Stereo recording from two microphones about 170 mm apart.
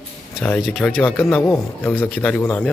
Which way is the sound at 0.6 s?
Centre (ahead or behind).